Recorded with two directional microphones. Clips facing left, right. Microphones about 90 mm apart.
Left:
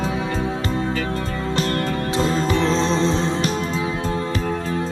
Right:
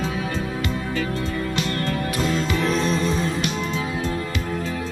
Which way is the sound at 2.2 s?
30° left (ahead or behind).